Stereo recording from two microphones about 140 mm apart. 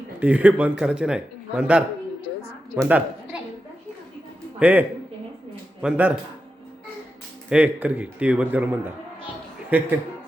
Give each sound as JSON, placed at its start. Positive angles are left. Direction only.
{"t": 0.2, "sound": "a man's voice", "side_deg": -10}
{"t": 2.8, "sound": "a sound", "side_deg": -10}
{"t": 4.6, "sound": "a man's voice", "side_deg": -10}
{"t": 7.5, "sound": "a man's voice", "side_deg": -10}